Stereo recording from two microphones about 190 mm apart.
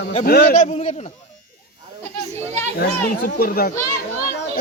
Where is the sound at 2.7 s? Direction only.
50° left (ahead or behind).